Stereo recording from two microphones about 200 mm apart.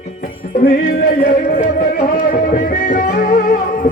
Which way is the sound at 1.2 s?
45° left (ahead or behind).